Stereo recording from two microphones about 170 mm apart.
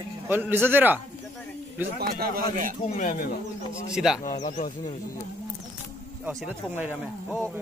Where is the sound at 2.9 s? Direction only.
50° left (ahead or behind).